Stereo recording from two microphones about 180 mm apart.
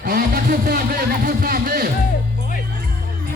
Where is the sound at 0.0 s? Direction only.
55° right (ahead or behind).